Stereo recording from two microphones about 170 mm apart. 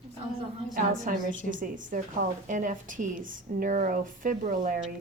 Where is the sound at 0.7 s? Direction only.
50° right (ahead or behind).